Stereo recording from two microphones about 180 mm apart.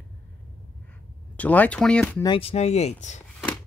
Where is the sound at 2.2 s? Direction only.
30° left (ahead or behind).